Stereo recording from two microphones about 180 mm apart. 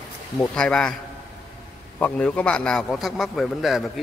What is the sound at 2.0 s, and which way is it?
A man's voice, 5° left (ahead or behind).